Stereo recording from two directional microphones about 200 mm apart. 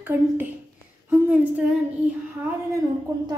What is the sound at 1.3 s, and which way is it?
Speech, 5° right (ahead or behind).